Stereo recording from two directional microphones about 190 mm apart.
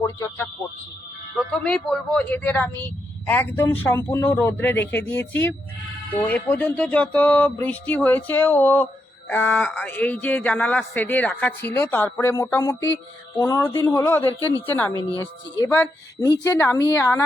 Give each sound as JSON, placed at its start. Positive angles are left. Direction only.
{"t": 0.0, "sound": "speech", "side_deg": 15}
{"t": 1.4, "sound": "speech", "side_deg": 5}